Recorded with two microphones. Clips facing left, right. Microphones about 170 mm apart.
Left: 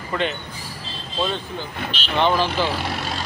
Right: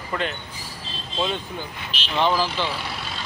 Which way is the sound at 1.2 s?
15° right (ahead or behind).